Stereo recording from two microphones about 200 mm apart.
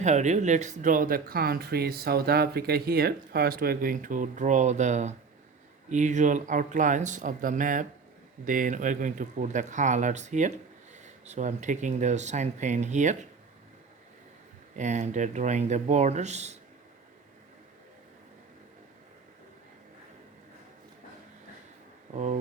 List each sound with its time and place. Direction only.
0.0 s speech: 35° right (ahead or behind)
14.8 s speech: 35° right (ahead or behind)
22.1 s speech: 35° right (ahead or behind)